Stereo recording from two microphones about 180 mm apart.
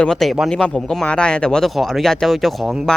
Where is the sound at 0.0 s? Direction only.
5° left (ahead or behind).